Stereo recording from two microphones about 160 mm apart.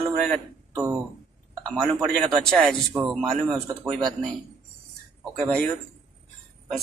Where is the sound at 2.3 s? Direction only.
5° left (ahead or behind).